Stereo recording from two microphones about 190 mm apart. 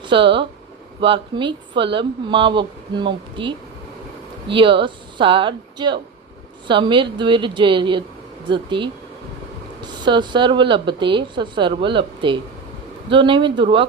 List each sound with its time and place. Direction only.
0.0 s a woman's voice: 25° right (ahead or behind)